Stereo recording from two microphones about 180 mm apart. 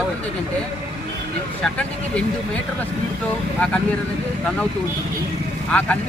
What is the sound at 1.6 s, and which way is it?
Speech, 5° left (ahead or behind).